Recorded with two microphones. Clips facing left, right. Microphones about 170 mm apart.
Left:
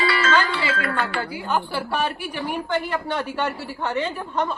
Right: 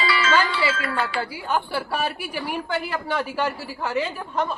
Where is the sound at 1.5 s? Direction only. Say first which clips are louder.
Left 1 dB; 5° right (ahead or behind).